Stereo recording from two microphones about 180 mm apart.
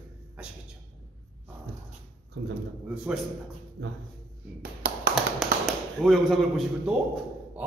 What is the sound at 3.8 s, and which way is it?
Speech, 90° right.